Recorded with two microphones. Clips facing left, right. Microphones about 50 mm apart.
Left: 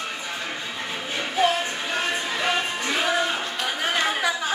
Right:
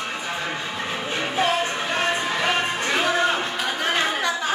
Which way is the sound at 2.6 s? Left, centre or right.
Right.